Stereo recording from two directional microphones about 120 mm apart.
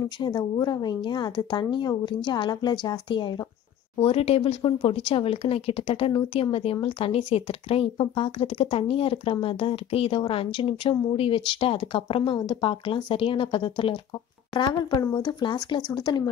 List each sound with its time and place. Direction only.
0.2 s a woman's voice: 35° left (ahead or behind)
4.0 s a woman's voice: 55° left (ahead or behind); by 16.3 s 40° left (ahead or behind)